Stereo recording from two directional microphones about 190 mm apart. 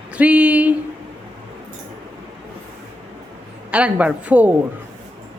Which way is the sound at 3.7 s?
5° right (ahead or behind).